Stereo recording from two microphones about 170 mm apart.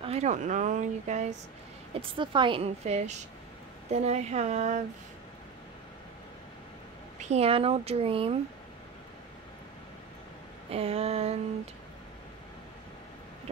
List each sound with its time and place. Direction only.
0.0 s speech: 40° right (ahead or behind)
2.0 s a woman's voice: 30° right (ahead or behind)
7.2 s a woman's voice: 40° right (ahead or behind)
10.7 s a woman's voice: 35° right (ahead or behind)